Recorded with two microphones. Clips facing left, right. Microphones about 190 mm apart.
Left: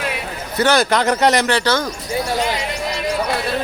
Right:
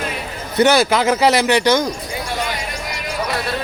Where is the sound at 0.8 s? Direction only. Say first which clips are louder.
Right 1 dB; 5° right (ahead or behind).